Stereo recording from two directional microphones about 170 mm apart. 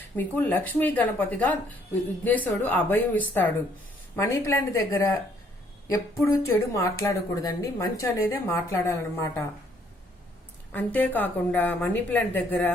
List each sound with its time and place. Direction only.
0.2 s a woman's voice: 10° left (ahead or behind)
10.7 s a woman's voice: 10° left (ahead or behind)